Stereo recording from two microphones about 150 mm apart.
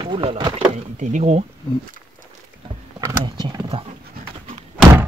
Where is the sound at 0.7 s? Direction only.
55° right (ahead or behind).